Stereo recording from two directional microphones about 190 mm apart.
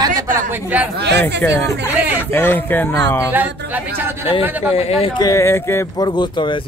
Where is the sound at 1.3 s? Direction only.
65° right (ahead or behind).